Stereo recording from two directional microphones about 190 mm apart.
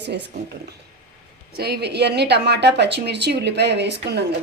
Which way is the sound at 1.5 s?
60° right (ahead or behind).